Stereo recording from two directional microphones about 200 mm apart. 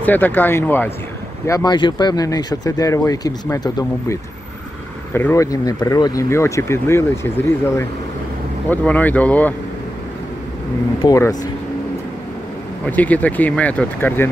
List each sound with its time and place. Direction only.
0.0 s speech: 10° left (ahead or behind)
11.0 s speech: 15° left (ahead or behind)
12.8 s speech: 10° left (ahead or behind)